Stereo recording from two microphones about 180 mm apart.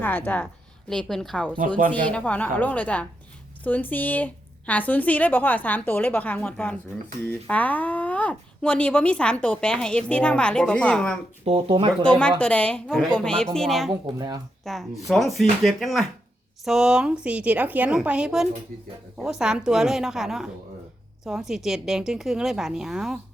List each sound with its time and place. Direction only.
0.0 s a woman's voice: 10° left (ahead or behind)
11.4 s speech: 30° right (ahead or behind)
12.4 s a woman's voice: 5° left (ahead or behind)
14.1 s speech: 20° right (ahead or behind)
14.6 s a woman's voice: centre (ahead or behind)